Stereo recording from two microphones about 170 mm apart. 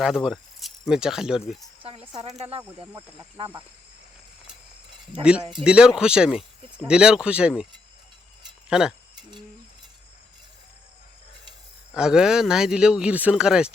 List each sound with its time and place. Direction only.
0.0 s speech: 5° right (ahead or behind)
1.8 s a sound: 35° right (ahead or behind)
2.4 s speech: 35° right (ahead or behind)
5.2 s speech: 5° right (ahead or behind)
8.7 s speech: 5° right (ahead or behind)
11.9 s speech: 5° right (ahead or behind)